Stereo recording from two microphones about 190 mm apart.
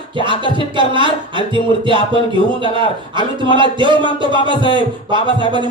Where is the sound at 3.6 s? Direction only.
25° right (ahead or behind).